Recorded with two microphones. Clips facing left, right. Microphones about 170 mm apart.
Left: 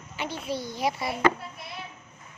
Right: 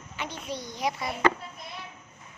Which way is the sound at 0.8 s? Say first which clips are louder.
Left 1 dB; 30° left (ahead or behind).